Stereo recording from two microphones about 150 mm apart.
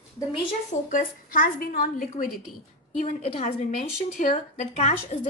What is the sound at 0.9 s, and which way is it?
A woman's voice, 65° left (ahead or behind).